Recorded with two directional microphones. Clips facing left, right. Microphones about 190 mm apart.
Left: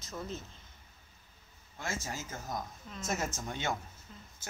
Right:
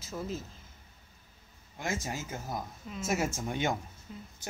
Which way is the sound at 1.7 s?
15° right (ahead or behind).